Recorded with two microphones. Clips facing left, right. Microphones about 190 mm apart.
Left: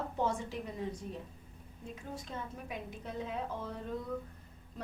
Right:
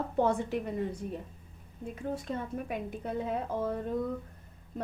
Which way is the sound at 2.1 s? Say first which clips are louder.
Right 8 dB; 60° right (ahead or behind).